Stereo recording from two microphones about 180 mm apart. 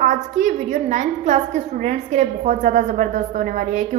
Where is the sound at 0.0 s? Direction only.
45° right (ahead or behind).